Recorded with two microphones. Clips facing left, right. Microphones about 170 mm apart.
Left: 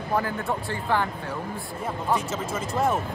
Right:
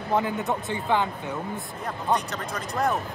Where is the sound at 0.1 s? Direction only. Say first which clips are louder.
Right 2 dB; 20° right (ahead or behind).